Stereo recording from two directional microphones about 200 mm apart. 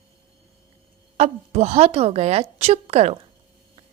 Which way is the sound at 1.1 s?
35° right (ahead or behind).